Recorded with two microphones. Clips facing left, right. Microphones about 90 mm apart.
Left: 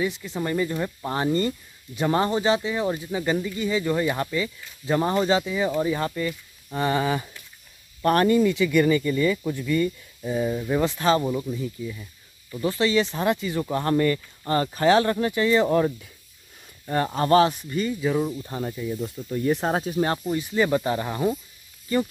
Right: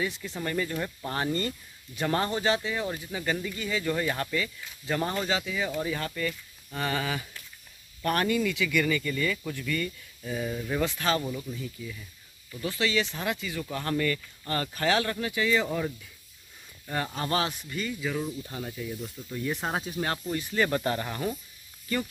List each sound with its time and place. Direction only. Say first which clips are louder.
0.3 s speech: left 5 dB; 20° left (ahead or behind); by 15.6 s 40° left (ahead or behind)
15.6 s speech: left 9 dB; 55° left (ahead or behind)
16.8 s speech: left 8 dB; 40° left (ahead or behind)
18.4 s speech: left 6 dB; 40° left (ahead or behind)
20.2 s speech: left 5 dB; 15° left (ahead or behind)